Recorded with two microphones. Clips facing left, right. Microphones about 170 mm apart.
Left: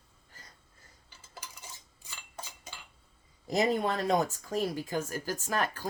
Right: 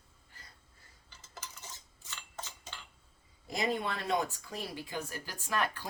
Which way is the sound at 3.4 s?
40° left (ahead or behind).